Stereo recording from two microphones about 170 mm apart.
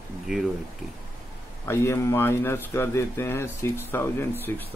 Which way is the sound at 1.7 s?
15° left (ahead or behind).